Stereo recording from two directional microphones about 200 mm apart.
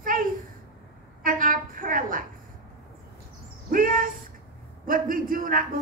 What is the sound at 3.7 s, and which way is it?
A woman's voice, 45° right (ahead or behind).